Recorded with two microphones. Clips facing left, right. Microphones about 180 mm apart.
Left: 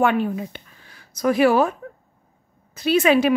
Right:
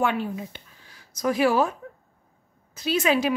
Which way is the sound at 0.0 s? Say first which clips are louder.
Left 5 dB; 60° left (ahead or behind).